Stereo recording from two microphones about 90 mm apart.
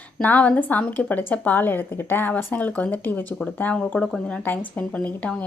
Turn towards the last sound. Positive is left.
turn(degrees=15)  # may be behind; listen again after turning